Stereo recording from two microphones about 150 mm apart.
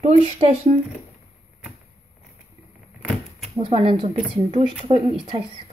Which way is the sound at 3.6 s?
40° right (ahead or behind).